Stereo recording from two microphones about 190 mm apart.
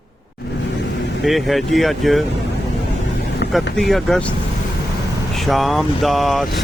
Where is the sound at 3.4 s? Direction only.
60° left (ahead or behind).